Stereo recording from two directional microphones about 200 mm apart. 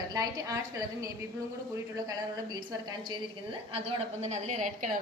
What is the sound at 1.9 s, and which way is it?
A woman's voice, 20° right (ahead or behind).